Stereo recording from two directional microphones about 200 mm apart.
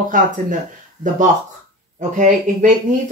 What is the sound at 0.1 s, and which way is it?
Speech, 40° right (ahead or behind).